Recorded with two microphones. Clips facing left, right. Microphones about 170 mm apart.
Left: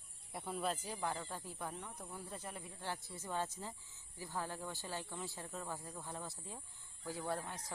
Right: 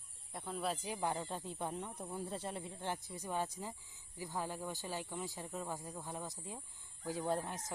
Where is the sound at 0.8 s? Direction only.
20° right (ahead or behind).